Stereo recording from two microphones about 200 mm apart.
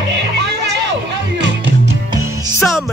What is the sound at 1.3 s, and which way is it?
Music, 65° right (ahead or behind).